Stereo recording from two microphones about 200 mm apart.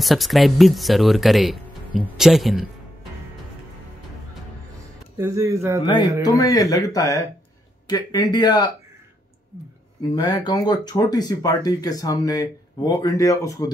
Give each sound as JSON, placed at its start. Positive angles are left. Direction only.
{"t": 0.0, "sound": "speech", "side_deg": 0}
{"t": 5.1, "sound": "speech", "side_deg": -15}
{"t": 6.2, "sound": "speech", "side_deg": 15}
{"t": 10.1, "sound": "speech", "side_deg": 20}